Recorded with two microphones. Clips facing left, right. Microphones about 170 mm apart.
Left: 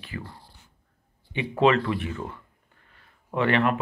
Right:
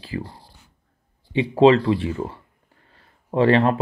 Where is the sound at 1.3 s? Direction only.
30° right (ahead or behind).